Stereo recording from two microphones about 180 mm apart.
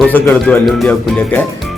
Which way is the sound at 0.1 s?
10° left (ahead or behind).